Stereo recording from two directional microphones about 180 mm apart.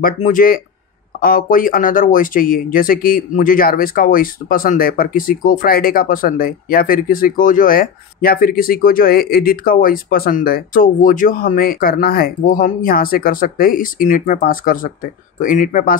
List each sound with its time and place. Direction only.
0.0 s speech: 50° left (ahead or behind)